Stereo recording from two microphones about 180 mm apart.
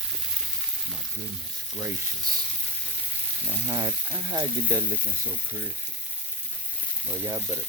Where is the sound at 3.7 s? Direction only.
25° right (ahead or behind).